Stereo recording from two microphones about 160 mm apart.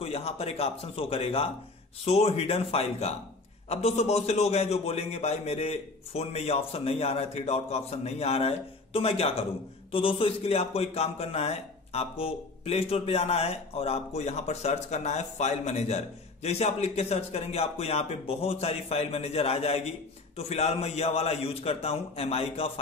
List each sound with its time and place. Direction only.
0.0 s a man's voice: 40° left (ahead or behind)